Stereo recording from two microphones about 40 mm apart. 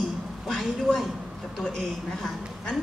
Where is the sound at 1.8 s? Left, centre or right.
Centre.